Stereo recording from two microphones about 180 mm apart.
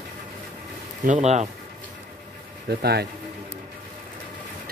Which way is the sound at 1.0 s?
40° right (ahead or behind).